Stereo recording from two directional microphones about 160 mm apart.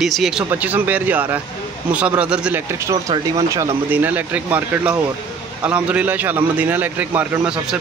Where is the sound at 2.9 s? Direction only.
20° right (ahead or behind).